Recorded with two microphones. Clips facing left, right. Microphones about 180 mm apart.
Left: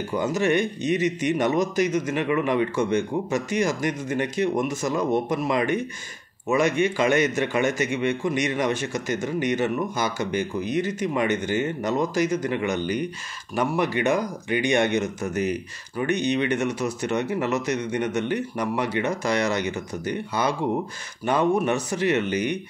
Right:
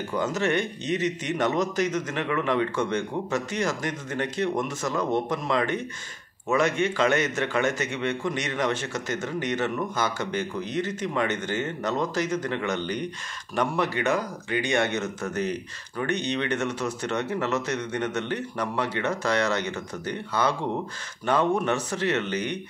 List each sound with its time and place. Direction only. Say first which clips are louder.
0.1 s a man's voice: left 3 dB; 10° left (ahead or behind)